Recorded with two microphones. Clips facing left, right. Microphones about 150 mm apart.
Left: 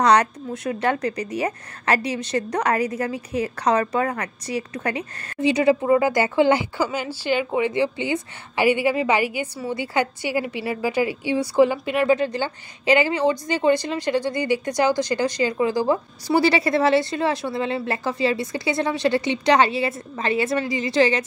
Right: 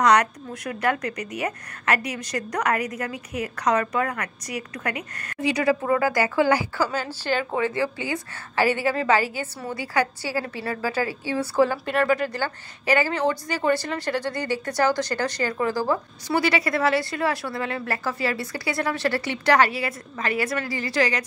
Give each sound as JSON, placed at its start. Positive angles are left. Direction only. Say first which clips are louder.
{"t": 0.0, "sound": "a woman's voice", "louder": "left 2 dB", "side_deg": 30}
{"t": 16.3, "sound": "a woman's voice", "louder": "left 4 dB", "side_deg": 30}